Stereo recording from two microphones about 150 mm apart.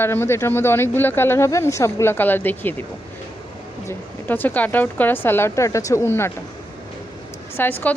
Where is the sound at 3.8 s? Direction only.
10° left (ahead or behind).